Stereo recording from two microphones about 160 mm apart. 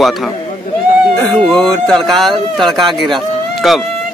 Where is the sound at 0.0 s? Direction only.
Centre (ahead or behind).